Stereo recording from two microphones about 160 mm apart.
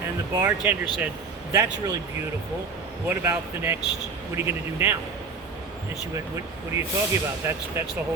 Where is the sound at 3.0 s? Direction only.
15° right (ahead or behind).